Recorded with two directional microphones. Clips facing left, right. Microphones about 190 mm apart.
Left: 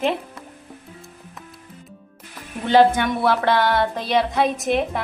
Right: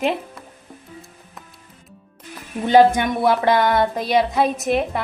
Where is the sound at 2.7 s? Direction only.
15° right (ahead or behind).